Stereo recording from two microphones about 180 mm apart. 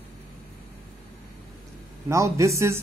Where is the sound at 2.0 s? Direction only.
15° right (ahead or behind).